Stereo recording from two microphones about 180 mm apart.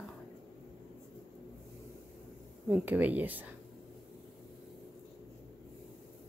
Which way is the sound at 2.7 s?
10° right (ahead or behind).